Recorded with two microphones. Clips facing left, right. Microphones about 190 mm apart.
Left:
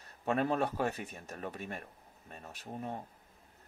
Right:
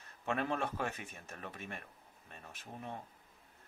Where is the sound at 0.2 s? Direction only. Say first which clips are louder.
Left 5 dB; 40° left (ahead or behind).